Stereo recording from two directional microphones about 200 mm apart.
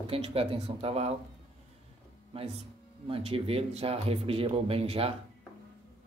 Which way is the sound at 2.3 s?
30° right (ahead or behind).